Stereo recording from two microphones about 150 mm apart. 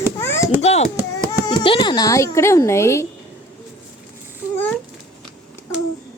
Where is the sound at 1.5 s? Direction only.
30° left (ahead or behind).